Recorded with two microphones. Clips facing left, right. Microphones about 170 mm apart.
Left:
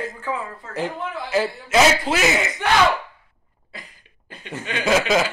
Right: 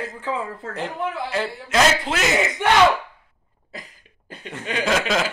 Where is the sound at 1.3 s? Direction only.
5° left (ahead or behind).